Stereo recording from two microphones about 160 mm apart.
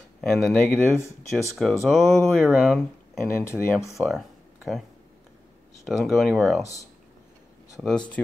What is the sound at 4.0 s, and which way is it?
Speech, 10° right (ahead or behind).